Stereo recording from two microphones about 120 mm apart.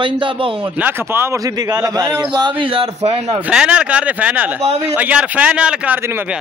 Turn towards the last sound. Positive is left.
turn(degrees=-10)  # may be behind; listen again after turning